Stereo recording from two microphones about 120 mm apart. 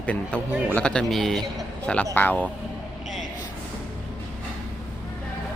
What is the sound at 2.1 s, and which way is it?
Speech, 15° left (ahead or behind).